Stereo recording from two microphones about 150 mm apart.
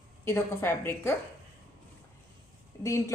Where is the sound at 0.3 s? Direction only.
15° left (ahead or behind).